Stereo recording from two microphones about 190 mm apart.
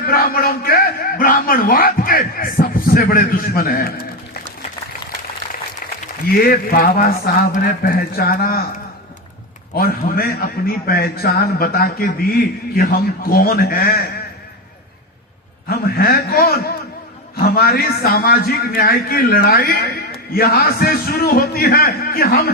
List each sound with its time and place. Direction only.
0.1 s a man's voice: 50° left (ahead or behind)
6.2 s a man's voice: 50° left (ahead or behind)
9.7 s a man's voice: 50° left (ahead or behind)
15.7 s a man's voice: 50° left (ahead or behind)